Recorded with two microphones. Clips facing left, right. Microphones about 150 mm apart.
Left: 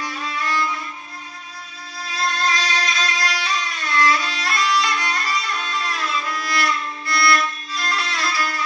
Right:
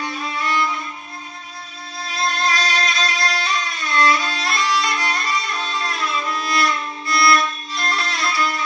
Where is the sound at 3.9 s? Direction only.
25° right (ahead or behind).